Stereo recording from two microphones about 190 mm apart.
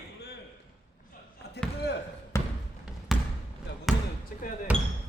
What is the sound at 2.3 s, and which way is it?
Trickle, 15° left (ahead or behind).